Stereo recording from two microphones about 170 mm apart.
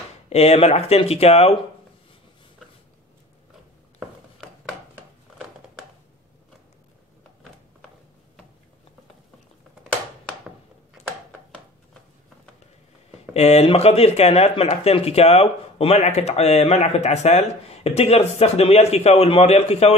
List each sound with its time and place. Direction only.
0.3 s speech: 40° left (ahead or behind)
13.3 s speech: 40° left (ahead or behind)